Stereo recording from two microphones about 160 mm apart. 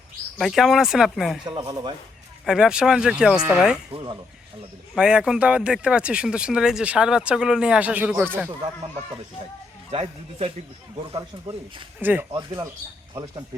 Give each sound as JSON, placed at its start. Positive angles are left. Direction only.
{"t": 0.3, "sound": "speech", "side_deg": 0}
{"t": 1.5, "sound": "speech", "side_deg": -25}
{"t": 2.5, "sound": "speech", "side_deg": -5}
{"t": 3.9, "sound": "a man's voice", "side_deg": -30}
{"t": 4.9, "sound": "speech", "side_deg": -5}
{"t": 9.9, "sound": "a man's voice", "side_deg": -35}
{"t": 11.9, "sound": "speech", "side_deg": -10}
{"t": 12.3, "sound": "speech", "side_deg": -25}